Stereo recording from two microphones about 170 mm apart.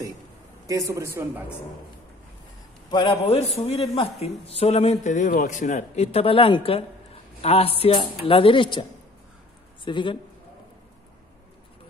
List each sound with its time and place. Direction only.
0.7 s speech: 20° right (ahead or behind)
2.9 s speech: 30° left (ahead or behind)
9.8 s a man's voice: 30° left (ahead or behind)